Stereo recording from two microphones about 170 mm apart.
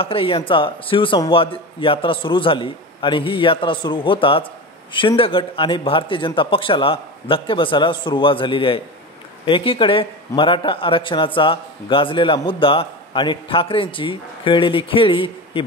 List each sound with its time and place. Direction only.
0.0 s speech: 30° left (ahead or behind)